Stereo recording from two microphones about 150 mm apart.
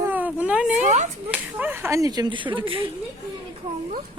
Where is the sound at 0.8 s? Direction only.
55° right (ahead or behind).